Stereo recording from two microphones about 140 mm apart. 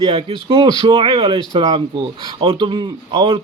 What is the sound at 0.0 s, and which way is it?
Speech, 35° right (ahead or behind).